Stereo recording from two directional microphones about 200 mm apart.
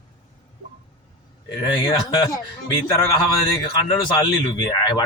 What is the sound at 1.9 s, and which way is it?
A man's voice, 15° left (ahead or behind).